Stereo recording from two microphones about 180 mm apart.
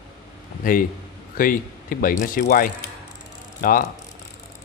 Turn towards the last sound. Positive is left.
turn(degrees=50)  # may be behind; listen again after turning